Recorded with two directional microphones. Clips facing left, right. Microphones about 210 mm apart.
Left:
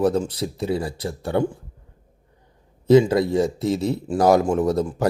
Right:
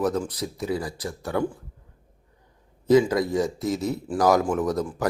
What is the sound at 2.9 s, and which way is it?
A man's voice, 25° left (ahead or behind).